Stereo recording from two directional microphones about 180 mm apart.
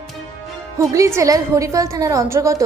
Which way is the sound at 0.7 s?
15° right (ahead or behind).